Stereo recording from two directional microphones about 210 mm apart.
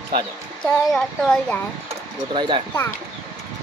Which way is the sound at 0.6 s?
5° left (ahead or behind).